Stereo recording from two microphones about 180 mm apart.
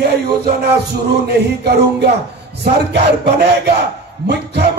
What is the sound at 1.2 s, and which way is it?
Music, 65° right (ahead or behind).